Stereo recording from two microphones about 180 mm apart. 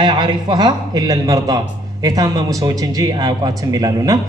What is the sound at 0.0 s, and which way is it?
A man's voice, 25° right (ahead or behind).